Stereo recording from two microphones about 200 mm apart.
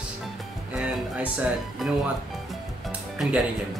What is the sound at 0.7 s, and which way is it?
Speech, 5° right (ahead or behind).